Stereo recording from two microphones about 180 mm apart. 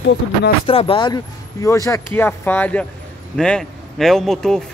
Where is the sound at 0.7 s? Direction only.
30° left (ahead or behind).